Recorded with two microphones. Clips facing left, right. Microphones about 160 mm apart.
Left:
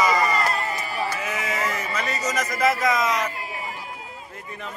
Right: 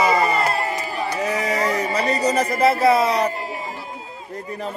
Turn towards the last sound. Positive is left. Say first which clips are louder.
# right 6 dB
turn(degrees=-35)  # may be behind; listen again after turning